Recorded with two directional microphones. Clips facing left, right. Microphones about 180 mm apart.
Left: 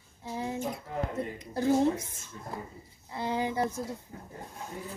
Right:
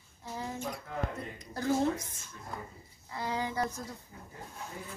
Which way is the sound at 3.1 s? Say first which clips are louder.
Left 4 dB; 25° left (ahead or behind).